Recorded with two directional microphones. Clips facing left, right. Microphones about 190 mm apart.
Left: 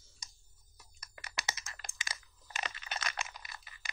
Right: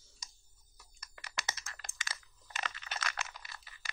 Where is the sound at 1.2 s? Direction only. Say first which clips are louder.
Left 1 dB; 15° left (ahead or behind).